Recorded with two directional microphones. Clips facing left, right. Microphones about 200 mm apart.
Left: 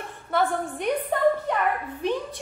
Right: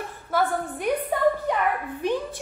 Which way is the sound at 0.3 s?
5° right (ahead or behind).